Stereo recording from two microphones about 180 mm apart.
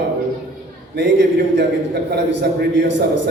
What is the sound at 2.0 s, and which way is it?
A man's voice, 65° right (ahead or behind).